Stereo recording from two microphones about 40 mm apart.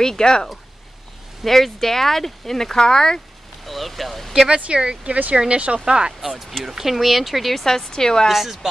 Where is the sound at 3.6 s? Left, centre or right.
Centre.